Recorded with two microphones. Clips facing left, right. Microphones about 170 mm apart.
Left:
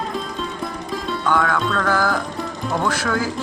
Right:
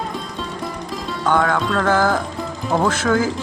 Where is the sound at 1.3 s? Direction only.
20° right (ahead or behind).